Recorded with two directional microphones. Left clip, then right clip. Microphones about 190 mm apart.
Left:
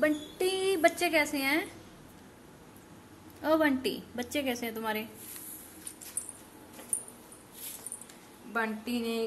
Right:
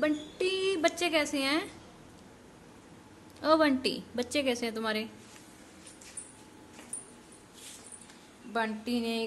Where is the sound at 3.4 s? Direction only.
20° right (ahead or behind).